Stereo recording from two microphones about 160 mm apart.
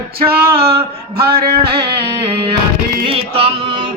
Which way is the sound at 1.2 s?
75° right (ahead or behind).